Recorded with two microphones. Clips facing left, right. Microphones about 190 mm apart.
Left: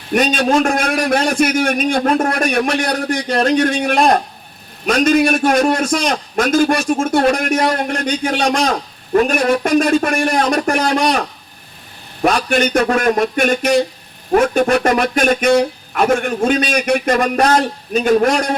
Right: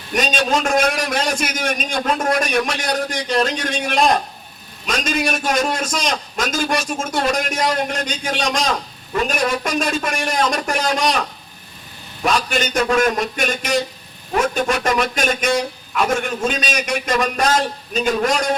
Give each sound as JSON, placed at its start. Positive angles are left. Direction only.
{"t": 0.1, "sound": "speech", "side_deg": 55}
{"t": 12.2, "sound": "speech", "side_deg": 55}